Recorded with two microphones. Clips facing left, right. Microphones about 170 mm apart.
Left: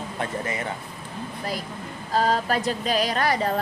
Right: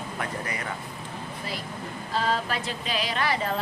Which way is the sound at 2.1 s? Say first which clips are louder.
Left 5 dB; 40° left (ahead or behind).